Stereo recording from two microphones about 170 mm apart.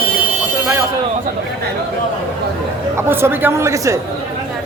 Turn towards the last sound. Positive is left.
turn(degrees=-15)  # may be behind; listen again after turning